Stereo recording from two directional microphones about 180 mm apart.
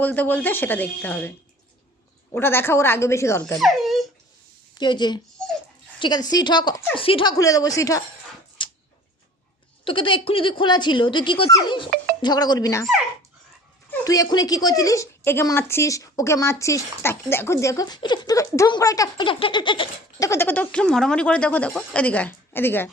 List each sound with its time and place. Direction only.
0.0 s a woman's voice: 10° left (ahead or behind)
2.3 s a woman's voice: 10° left (ahead or behind)
3.6 s a sound: centre (ahead or behind)
4.7 s a woman's voice: 25° left (ahead or behind)
8.6 s a sound: 25° left (ahead or behind)
9.8 s speech: 30° left (ahead or behind)
13.9 s a woman's voice: 20° left (ahead or behind)